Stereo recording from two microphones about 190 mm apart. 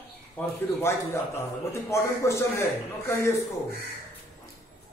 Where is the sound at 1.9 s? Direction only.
15° left (ahead or behind).